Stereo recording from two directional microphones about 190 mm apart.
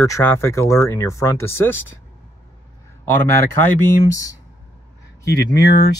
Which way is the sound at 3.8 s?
15° left (ahead or behind).